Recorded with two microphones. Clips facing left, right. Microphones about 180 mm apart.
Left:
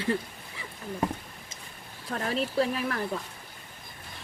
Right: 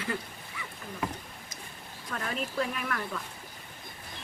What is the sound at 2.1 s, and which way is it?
Speech, 35° left (ahead or behind).